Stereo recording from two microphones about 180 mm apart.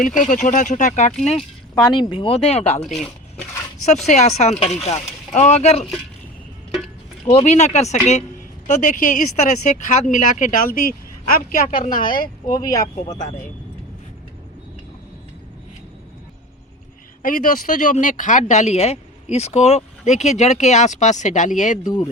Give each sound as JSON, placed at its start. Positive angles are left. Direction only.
{"t": 0.0, "sound": "speech", "side_deg": 45}
{"t": 1.7, "sound": "speech", "side_deg": 25}
{"t": 2.8, "sound": "speech", "side_deg": 0}
{"t": 3.8, "sound": "speech", "side_deg": 40}
{"t": 7.3, "sound": "speech", "side_deg": 40}
{"t": 12.5, "sound": "speech", "side_deg": 20}
{"t": 17.2, "sound": "speech", "side_deg": 50}